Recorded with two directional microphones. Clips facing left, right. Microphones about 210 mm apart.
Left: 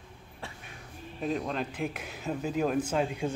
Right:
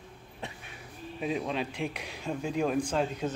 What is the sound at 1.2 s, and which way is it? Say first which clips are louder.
Speech: even; 5° right (ahead or behind).